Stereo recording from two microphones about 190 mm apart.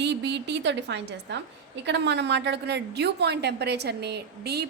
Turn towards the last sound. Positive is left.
turn(degrees=-60)  # may be behind; listen again after turning